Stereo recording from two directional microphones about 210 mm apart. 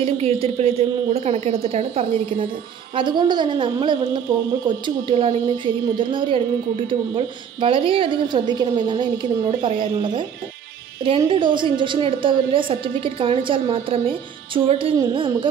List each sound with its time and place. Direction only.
0.0 s a woman's voice: 25° right (ahead or behind)